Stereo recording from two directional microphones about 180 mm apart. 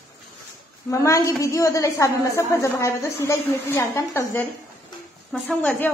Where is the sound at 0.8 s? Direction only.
15° left (ahead or behind).